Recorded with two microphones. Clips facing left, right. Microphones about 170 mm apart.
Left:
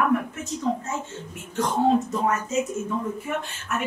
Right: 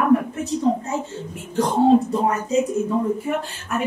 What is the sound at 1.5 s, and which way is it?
Speech, 35° right (ahead or behind).